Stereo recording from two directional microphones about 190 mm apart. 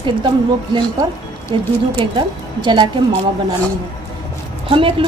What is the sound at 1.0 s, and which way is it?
A woman's voice, 20° right (ahead or behind).